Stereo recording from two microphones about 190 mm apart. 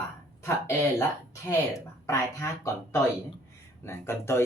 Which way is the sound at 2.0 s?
15° left (ahead or behind).